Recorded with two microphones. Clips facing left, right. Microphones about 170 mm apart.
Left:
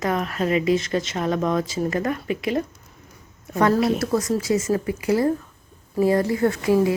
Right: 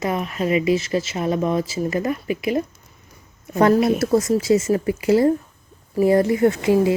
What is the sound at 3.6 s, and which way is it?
Speech, 20° right (ahead or behind).